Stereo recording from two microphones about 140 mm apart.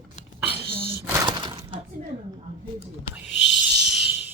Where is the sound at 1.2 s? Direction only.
30° right (ahead or behind).